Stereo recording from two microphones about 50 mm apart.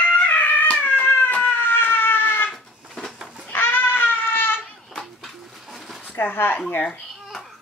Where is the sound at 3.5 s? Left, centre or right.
Left.